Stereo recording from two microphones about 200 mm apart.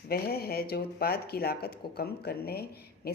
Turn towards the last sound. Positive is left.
turn(degrees=50)  # may be behind; listen again after turning